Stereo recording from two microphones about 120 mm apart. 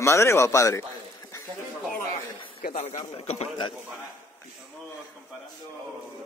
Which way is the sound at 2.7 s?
65° left (ahead or behind).